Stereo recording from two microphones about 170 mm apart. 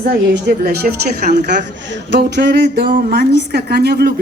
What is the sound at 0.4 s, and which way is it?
Speech, 65° right (ahead or behind).